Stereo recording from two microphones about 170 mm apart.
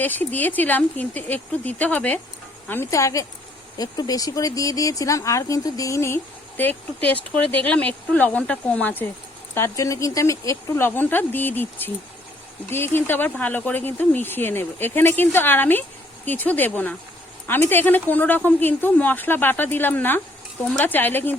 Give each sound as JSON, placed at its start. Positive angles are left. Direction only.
{"t": 0.0, "sound": "speech", "side_deg": 10}